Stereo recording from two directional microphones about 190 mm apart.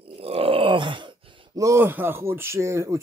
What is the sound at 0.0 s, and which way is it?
Groan, 30° right (ahead or behind).